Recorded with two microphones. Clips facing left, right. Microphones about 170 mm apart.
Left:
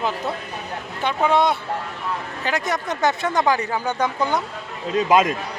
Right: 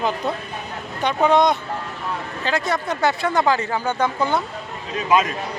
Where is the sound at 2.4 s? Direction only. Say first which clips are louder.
Right 2 dB; 15° left (ahead or behind).